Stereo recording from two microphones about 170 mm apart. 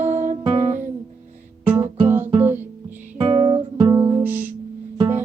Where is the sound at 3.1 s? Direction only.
35° right (ahead or behind); by 4.4 s 15° right (ahead or behind).